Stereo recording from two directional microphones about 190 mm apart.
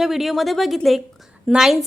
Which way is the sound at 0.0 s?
Centre (ahead or behind).